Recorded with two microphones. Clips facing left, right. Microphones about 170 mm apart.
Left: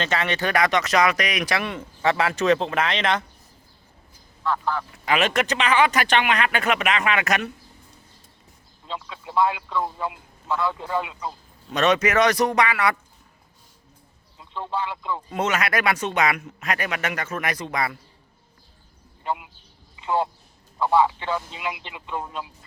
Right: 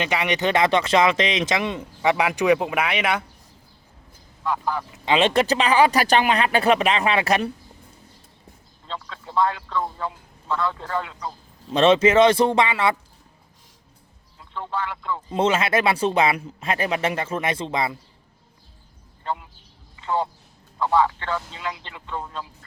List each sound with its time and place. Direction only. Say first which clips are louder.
0.0 s speech: right 2 dB; 15° right (ahead or behind)
4.4 s speech: even; 10° right (ahead or behind); by 7.5 s 30° right (ahead or behind)
8.9 s a man's voice: even; 10° left (ahead or behind)
11.7 s speech: right 4 dB; 30° right (ahead or behind)
14.3 s speech: even; 20° left (ahead or behind)
15.3 s speech: right 4 dB; 30° right (ahead or behind)
19.2 s a sound: left 1 dB; 15° left (ahead or behind)
20.0 s a man's voice: left 1 dB; 15° left (ahead or behind)